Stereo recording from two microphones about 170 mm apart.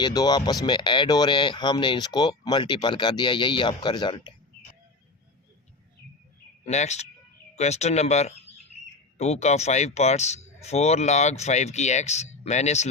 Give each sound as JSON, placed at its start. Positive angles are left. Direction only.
{"t": 0.0, "sound": "speech", "side_deg": 25}
{"t": 6.7, "sound": "speech", "side_deg": 40}